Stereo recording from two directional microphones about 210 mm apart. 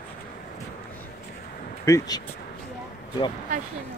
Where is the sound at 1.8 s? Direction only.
15° left (ahead or behind).